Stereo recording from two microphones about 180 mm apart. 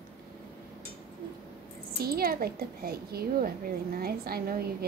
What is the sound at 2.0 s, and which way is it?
A woman's voice, 55° right (ahead or behind).